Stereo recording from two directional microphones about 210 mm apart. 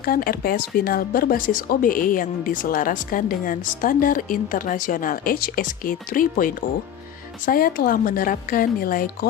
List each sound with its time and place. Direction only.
0.0 s speech: 45° left (ahead or behind)